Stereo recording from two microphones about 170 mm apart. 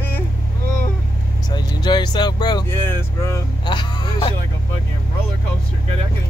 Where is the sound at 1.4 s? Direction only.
25° left (ahead or behind).